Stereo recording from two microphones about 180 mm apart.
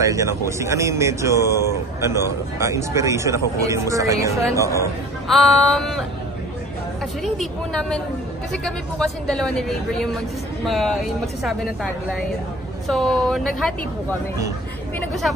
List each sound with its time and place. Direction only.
0.0 s speech: 15° right (ahead or behind)
5.3 s a woman's voice: centre (ahead or behind)
7.2 s a woman's voice: centre (ahead or behind)